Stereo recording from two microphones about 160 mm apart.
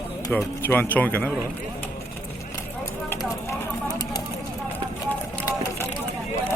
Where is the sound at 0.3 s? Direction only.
10° left (ahead or behind).